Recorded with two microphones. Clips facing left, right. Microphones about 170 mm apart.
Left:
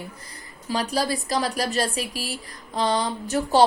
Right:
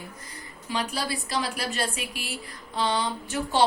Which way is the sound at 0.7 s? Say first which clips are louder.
Left 5 dB; 40° left (ahead or behind).